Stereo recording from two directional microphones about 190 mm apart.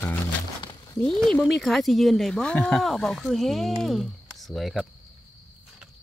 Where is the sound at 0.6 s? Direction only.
20° left (ahead or behind).